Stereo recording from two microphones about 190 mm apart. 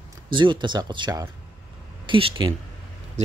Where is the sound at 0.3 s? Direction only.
25° right (ahead or behind).